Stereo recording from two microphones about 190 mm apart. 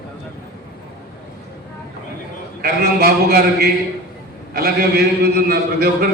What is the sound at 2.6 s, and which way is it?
A man's voice, 55° right (ahead or behind).